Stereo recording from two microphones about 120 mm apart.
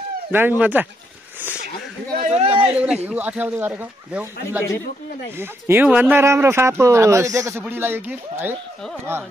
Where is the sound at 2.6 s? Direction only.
10° right (ahead or behind).